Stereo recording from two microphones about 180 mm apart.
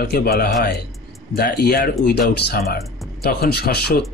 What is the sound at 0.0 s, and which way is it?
Speech, 60° left (ahead or behind).